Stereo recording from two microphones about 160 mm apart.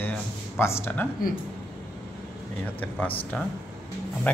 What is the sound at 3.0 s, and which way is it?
Speech, 10° left (ahead or behind).